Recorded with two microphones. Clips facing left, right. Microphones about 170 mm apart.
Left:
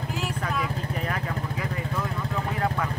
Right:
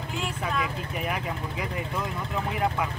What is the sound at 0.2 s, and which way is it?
Vehicle, centre (ahead or behind).